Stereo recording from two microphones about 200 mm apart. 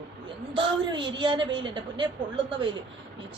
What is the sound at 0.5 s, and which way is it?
Speech, 25° right (ahead or behind).